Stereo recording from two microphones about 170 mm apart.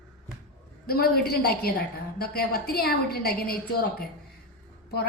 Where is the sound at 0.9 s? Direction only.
65° left (ahead or behind).